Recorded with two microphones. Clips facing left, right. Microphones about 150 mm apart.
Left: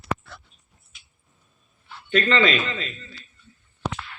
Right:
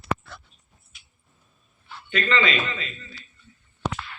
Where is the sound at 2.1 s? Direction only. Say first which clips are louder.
Left 4 dB; 40° left (ahead or behind).